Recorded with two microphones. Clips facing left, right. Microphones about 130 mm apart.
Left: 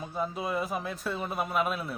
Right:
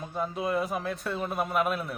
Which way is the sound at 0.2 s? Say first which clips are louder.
Right 2 dB; centre (ahead or behind).